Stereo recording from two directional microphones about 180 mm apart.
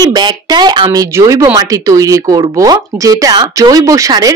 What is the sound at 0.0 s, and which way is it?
Speech, 20° right (ahead or behind).